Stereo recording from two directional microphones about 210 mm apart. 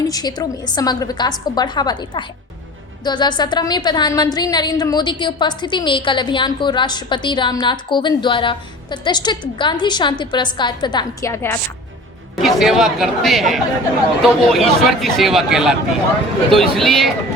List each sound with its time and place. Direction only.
0.1 s a woman's voice: 20° left (ahead or behind)
12.4 s speech: centre (ahead or behind)